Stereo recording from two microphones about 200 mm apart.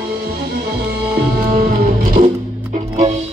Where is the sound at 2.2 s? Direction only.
45° right (ahead or behind).